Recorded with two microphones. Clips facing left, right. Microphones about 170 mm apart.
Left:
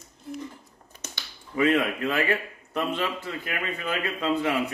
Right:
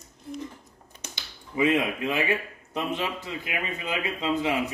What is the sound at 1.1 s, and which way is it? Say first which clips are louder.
A woman's voice: left 1 dB; 20° right (ahead or behind).